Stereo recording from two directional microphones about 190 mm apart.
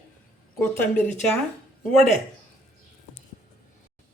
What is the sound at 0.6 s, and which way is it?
Speech, 10° left (ahead or behind).